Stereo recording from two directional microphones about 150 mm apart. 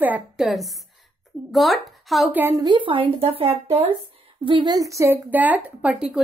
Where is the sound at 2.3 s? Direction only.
15° right (ahead or behind).